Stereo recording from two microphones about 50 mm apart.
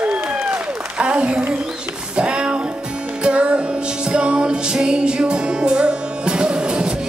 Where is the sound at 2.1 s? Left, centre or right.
Centre.